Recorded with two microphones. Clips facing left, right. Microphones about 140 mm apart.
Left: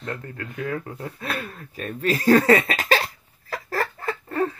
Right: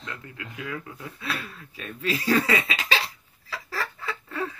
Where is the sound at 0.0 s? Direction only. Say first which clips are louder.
Left 7 dB; 45° left (ahead or behind).